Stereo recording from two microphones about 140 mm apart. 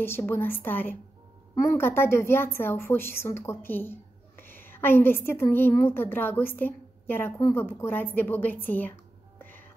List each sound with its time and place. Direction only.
0.0 s a woman's voice: 15° left (ahead or behind)